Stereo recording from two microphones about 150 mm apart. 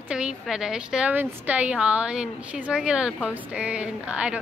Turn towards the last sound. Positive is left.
turn(degrees=-5)  # may be behind; listen again after turning